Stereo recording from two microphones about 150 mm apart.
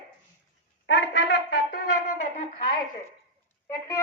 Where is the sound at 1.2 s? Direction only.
90° left.